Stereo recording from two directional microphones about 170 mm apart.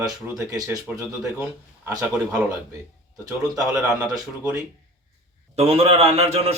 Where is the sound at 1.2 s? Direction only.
5° right (ahead or behind).